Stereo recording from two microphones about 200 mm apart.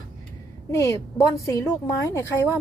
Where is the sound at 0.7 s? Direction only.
15° left (ahead or behind).